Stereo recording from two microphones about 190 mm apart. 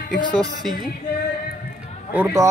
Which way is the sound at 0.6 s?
Centre (ahead or behind).